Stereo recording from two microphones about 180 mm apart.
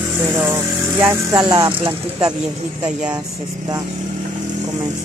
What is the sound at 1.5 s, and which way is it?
Speech, 25° right (ahead or behind).